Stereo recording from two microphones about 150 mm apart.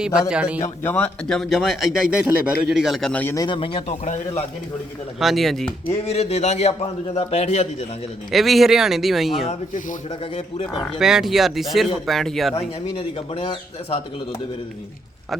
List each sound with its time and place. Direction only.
0.3 s a man's voice: 5° right (ahead or behind)
0.6 s speech: 15° left (ahead or behind)
3.3 s a man's voice: 30° left (ahead or behind)
4.0 s a man's voice: 55° left (ahead or behind)
5.2 s speech: centre (ahead or behind)
6.1 s a man's voice: 45° left (ahead or behind)
8.3 s speech: centre (ahead or behind)
10.8 s speech: 5° right (ahead or behind)
12.5 s a man's voice: 40° left (ahead or behind)